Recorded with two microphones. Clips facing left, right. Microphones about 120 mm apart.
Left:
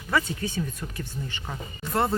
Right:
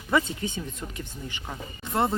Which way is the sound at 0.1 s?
20° right (ahead or behind).